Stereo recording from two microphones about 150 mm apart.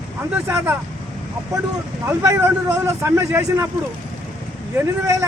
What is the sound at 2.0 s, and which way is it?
Speech, 20° right (ahead or behind).